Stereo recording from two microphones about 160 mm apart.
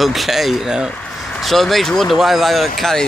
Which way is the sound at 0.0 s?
Centre (ahead or behind).